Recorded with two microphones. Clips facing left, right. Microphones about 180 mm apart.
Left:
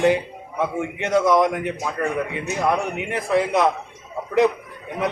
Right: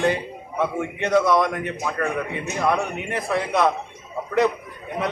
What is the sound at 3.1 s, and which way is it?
Speech, 15° left (ahead or behind).